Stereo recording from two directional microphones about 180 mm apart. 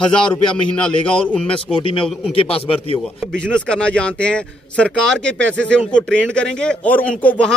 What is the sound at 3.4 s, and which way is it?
A man's voice, 5° left (ahead or behind).